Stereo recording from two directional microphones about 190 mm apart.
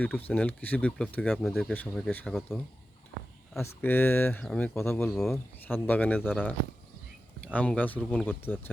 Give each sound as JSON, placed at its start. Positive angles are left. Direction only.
{"t": 0.0, "sound": "speech", "side_deg": 10}
{"t": 3.6, "sound": "speech", "side_deg": 10}
{"t": 5.1, "sound": "speech", "side_deg": 0}